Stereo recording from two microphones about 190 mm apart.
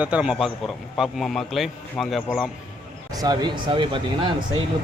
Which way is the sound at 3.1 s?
20° right (ahead or behind).